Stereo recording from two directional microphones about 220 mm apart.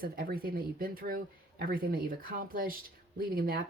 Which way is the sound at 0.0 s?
45° right (ahead or behind).